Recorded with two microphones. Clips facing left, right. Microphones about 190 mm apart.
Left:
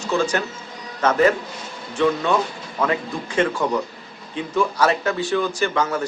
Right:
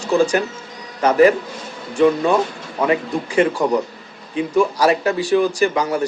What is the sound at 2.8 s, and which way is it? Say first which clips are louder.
Speech: right 4 dB; 10° right (ahead or behind).